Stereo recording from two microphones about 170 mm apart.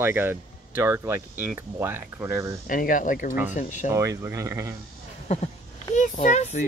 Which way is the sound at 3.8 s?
15° right (ahead or behind).